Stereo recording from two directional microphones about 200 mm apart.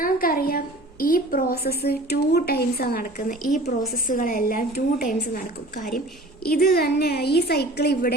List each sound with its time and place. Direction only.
0.0 s a woman's voice: 45° left (ahead or behind)